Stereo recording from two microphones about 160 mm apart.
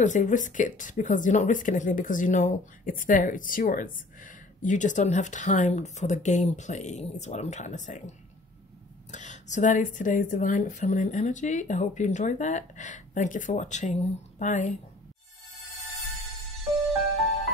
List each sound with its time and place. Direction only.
0.0 s speech: 50° left (ahead or behind)
9.1 s speech: 50° left (ahead or behind)